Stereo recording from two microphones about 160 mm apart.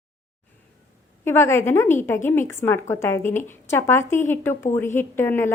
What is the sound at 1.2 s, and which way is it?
Speech, 15° left (ahead or behind).